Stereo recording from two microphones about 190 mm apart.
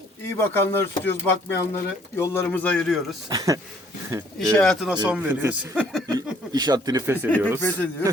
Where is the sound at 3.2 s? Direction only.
20° right (ahead or behind).